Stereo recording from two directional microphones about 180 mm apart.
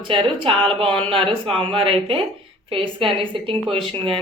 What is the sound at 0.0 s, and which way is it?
A woman's voice, 30° right (ahead or behind).